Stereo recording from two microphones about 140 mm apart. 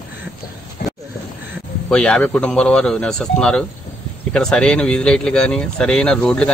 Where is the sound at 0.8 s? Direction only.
90° left.